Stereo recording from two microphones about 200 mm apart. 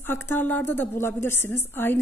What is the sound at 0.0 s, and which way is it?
A woman's voice, 10° left (ahead or behind).